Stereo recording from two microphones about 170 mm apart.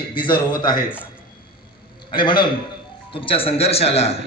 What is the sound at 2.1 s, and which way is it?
A man's voice, 25° left (ahead or behind).